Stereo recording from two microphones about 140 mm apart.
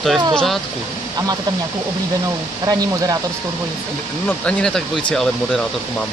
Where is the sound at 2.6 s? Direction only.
25° right (ahead or behind).